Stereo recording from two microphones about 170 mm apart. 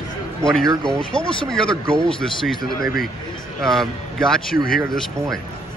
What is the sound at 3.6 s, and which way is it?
Speech, centre (ahead or behind).